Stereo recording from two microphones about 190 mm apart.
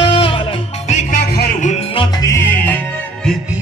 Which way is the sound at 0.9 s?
40° left (ahead or behind).